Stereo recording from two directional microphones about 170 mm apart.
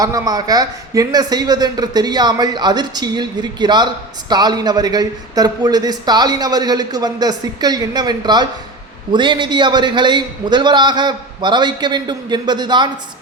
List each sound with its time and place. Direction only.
0.0 s a man's voice: 20° right (ahead or behind)